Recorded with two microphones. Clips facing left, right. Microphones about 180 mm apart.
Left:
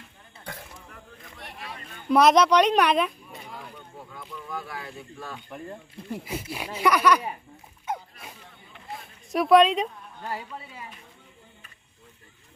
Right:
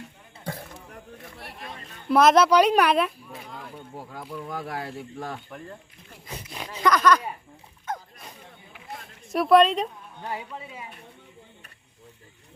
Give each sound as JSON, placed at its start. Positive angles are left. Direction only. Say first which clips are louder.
{"t": 0.4, "sound": "a sound", "louder": "right 5 dB", "side_deg": -35}
{"t": 2.0, "sound": "speech", "louder": "right 1 dB", "side_deg": 0}
{"t": 4.4, "sound": "speech", "louder": "right 3 dB", "side_deg": -80}
{"t": 5.5, "sound": "speech", "louder": "left 3 dB", "side_deg": 5}
{"t": 7.9, "sound": "mechanisms", "louder": "left 1 dB", "side_deg": 10}
{"t": 9.3, "sound": "a woman's voice", "louder": "even", "side_deg": 0}
{"t": 10.2, "sound": "speech", "louder": "right 1 dB", "side_deg": -20}